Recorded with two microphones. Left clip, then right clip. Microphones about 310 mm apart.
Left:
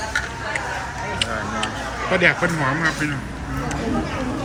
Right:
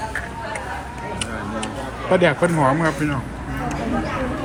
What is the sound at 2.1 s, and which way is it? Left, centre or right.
Speech, centre.